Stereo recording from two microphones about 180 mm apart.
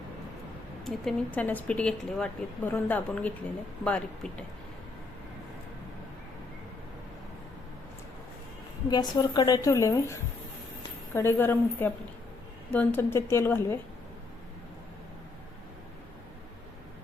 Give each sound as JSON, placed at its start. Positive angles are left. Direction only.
{"t": 0.9, "sound": "speech", "side_deg": 5}
{"t": 8.9, "sound": "a woman's voice", "side_deg": 25}